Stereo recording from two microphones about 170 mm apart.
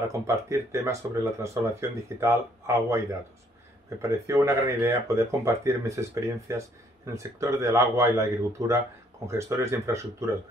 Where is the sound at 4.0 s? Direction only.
15° right (ahead or behind).